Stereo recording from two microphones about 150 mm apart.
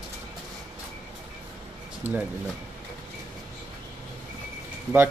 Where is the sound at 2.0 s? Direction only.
15° right (ahead or behind).